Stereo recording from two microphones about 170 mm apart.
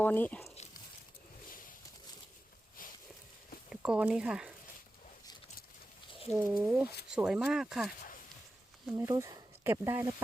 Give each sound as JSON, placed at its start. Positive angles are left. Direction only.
{"t": 0.0, "sound": "speech", "side_deg": 10}
{"t": 1.5, "sound": "a sound", "side_deg": 55}
{"t": 3.7, "sound": "speech", "side_deg": -5}
{"t": 6.5, "sound": "speech", "side_deg": -5}
{"t": 9.0, "sound": "speech", "side_deg": -15}